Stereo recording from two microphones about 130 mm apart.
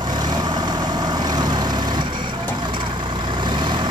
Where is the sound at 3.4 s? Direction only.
35° right (ahead or behind).